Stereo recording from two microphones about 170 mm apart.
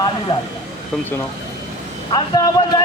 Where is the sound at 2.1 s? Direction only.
25° left (ahead or behind).